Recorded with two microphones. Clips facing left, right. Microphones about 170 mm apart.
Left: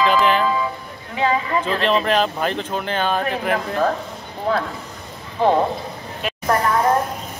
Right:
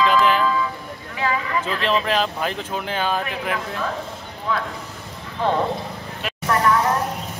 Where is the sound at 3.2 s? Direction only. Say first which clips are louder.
Left 5 dB; 50° left (ahead or behind).